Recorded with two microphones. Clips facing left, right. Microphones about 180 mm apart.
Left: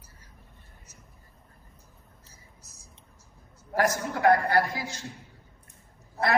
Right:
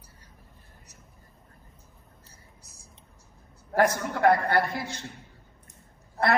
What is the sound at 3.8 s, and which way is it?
A woman's voice, 65° right (ahead or behind).